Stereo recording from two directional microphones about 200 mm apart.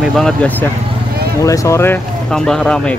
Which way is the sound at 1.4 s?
15° left (ahead or behind).